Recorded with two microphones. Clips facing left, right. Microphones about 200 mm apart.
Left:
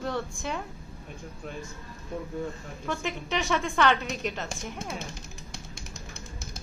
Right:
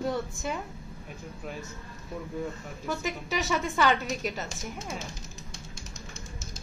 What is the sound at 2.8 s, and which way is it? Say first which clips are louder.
A woman's voice: even; 5° right (ahead or behind).